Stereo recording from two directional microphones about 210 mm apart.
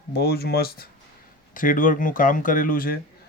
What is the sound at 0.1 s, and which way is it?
Speech, 50° left (ahead or behind).